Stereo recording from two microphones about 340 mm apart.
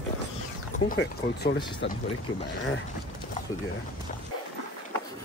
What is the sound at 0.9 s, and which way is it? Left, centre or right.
Speech, left.